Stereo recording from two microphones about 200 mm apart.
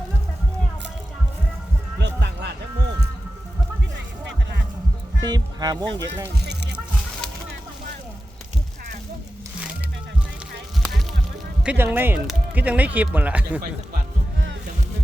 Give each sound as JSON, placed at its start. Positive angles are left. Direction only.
{"t": 2.0, "sound": "a sound", "side_deg": -60}
{"t": 5.2, "sound": "speech", "side_deg": -20}
{"t": 6.4, "sound": "music", "side_deg": -55}
{"t": 11.6, "sound": "speech", "side_deg": -5}